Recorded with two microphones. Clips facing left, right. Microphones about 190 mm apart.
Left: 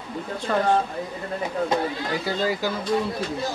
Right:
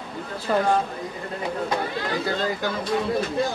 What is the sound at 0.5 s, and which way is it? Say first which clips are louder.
Speech: right 1 dB; 10° right (ahead or behind).